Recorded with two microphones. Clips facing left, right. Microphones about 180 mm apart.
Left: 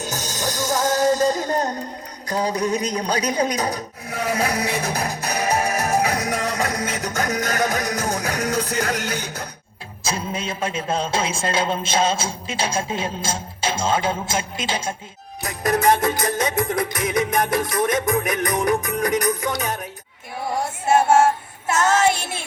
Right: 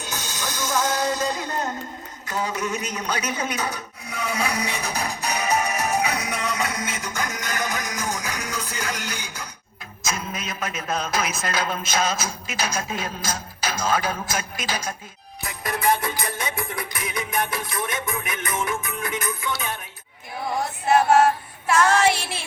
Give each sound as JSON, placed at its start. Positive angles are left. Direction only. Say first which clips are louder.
{"t": 0.0, "sound": "music", "louder": "left 5 dB", "side_deg": 40}
{"t": 2.2, "sound": "a man's voice", "louder": "left 5 dB", "side_deg": 40}
{"t": 8.1, "sound": "music", "louder": "left 7 dB", "side_deg": 60}
{"t": 10.0, "sound": "speech", "louder": "left 4 dB", "side_deg": 30}
{"t": 15.4, "sound": "music", "louder": "left 8 dB", "side_deg": 45}
{"t": 20.6, "sound": "music", "louder": "left 1 dB", "side_deg": 25}
{"t": 21.9, "sound": "a sound", "louder": "left 1 dB", "side_deg": 45}